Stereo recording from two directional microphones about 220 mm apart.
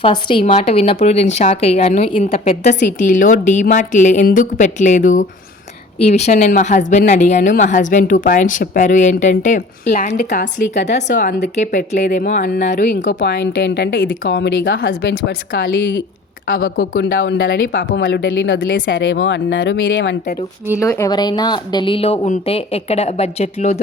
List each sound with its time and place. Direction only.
0.0 s speech: 20° left (ahead or behind)
12.9 s speech: 55° left (ahead or behind)
14.8 s speech: 40° left (ahead or behind)
20.7 s speech: 10° left (ahead or behind); by 23.8 s 30° left (ahead or behind)